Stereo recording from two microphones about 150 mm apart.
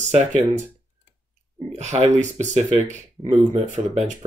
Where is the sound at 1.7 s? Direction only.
50° right (ahead or behind).